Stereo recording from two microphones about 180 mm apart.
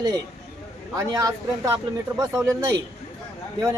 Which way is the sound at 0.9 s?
20° right (ahead or behind).